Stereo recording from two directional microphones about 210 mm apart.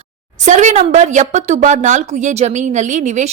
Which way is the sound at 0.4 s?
35° right (ahead or behind).